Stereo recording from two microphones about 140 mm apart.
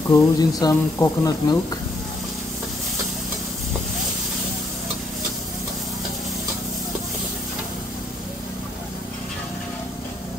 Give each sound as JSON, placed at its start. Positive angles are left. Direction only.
{"t": 0.1, "sound": "speech", "side_deg": 25}